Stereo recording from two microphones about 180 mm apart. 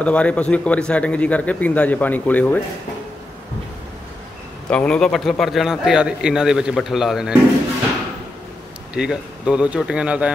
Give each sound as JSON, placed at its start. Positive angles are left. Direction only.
{"t": 0.0, "sound": "speech", "side_deg": 5}
{"t": 4.6, "sound": "a man's voice", "side_deg": 5}
{"t": 8.9, "sound": "a man's voice", "side_deg": -5}